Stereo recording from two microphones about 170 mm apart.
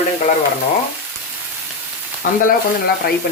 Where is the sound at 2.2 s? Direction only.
55° left (ahead or behind).